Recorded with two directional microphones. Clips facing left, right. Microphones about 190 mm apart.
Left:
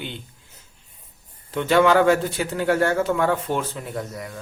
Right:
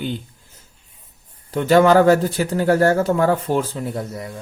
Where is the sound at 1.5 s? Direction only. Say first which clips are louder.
Right 4 dB; 40° right (ahead or behind).